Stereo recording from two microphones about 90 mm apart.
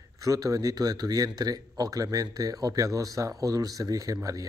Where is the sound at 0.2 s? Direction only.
40° right (ahead or behind).